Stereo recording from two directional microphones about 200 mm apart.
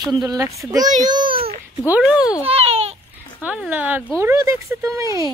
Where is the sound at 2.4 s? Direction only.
30° right (ahead or behind).